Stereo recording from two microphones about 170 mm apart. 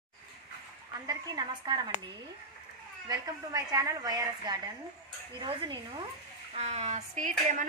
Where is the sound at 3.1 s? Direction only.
20° right (ahead or behind).